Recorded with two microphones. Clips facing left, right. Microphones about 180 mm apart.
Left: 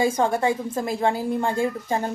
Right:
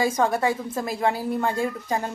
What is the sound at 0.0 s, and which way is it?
A woman's voice, 25° left (ahead or behind).